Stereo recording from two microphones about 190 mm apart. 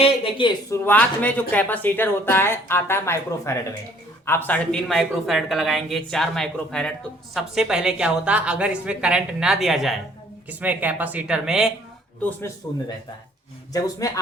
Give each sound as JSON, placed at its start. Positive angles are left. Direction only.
{"t": 0.0, "sound": "a sound", "side_deg": 25}
{"t": 0.7, "sound": "speech", "side_deg": 10}
{"t": 13.7, "sound": "a man's voice", "side_deg": 20}